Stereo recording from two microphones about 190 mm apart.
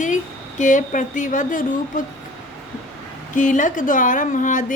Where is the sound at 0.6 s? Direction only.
40° left (ahead or behind).